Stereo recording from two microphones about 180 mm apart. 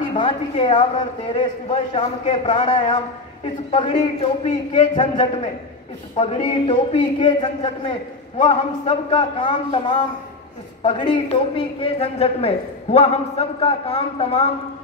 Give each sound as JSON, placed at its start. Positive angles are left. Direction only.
{"t": 0.1, "sound": "a man's voice", "side_deg": 30}